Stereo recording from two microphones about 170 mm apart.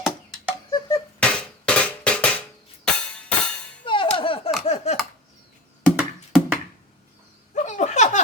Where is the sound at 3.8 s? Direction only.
30° left (ahead or behind).